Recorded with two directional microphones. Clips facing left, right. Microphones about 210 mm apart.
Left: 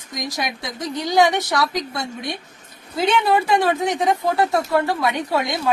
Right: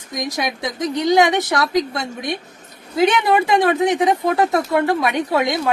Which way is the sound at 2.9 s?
15° right (ahead or behind).